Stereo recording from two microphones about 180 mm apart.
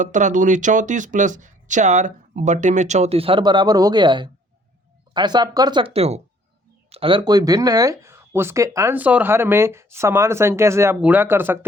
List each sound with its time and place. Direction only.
0.0 s speech: 45° right (ahead or behind); by 11.6 s 10° right (ahead or behind)